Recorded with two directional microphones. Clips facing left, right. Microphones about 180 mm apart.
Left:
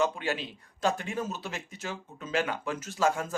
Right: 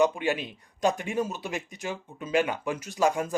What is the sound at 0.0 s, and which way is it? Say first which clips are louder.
A man's voice: right 5 dB; 15° right (ahead or behind).